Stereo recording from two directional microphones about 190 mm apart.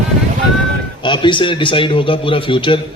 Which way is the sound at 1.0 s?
25° left (ahead or behind).